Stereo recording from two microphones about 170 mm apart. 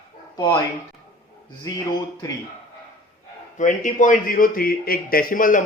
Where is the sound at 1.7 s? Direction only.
20° left (ahead or behind).